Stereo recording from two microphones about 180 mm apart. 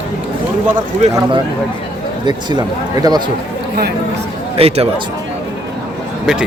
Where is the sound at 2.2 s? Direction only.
25° right (ahead or behind).